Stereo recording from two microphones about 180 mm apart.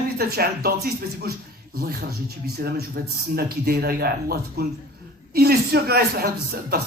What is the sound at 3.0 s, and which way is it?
Speech, 55° right (ahead or behind).